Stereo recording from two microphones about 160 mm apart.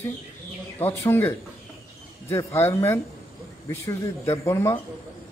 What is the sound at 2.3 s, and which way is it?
Speech, 15° left (ahead or behind).